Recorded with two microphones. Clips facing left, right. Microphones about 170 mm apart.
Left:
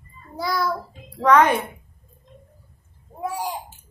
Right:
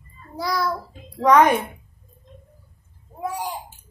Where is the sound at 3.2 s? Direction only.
10° left (ahead or behind).